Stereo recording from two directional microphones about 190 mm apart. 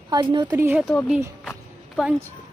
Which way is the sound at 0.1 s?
20° right (ahead or behind).